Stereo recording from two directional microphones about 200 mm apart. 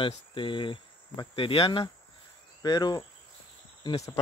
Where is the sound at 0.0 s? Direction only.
25° left (ahead or behind).